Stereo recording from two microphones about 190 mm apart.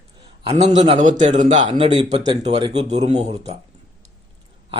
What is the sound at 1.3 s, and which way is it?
Speech, 40° right (ahead or behind).